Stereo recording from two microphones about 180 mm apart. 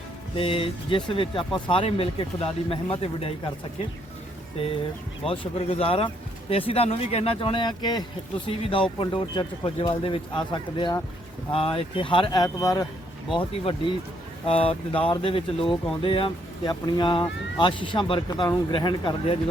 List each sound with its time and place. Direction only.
0.3 s speech: 30° left (ahead or behind)
5.2 s speech: 30° left (ahead or behind)